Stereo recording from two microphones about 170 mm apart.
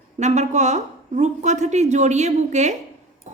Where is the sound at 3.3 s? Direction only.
45° right (ahead or behind).